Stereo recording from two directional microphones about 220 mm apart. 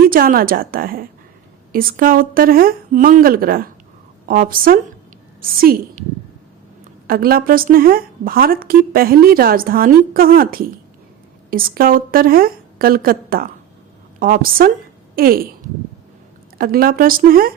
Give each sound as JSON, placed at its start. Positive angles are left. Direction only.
{"t": 0.0, "sound": "a woman's voice", "side_deg": -40}
{"t": 7.1, "sound": "a woman's voice", "side_deg": -40}
{"t": 16.6, "sound": "a woman's voice", "side_deg": -40}